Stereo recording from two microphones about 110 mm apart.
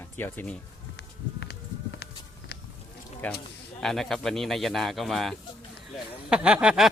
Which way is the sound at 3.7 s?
5° left (ahead or behind).